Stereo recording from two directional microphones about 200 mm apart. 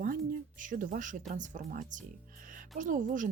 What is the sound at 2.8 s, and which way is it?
Speech, 40° right (ahead or behind).